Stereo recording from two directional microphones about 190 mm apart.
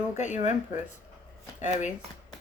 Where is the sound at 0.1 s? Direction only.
40° left (ahead or behind).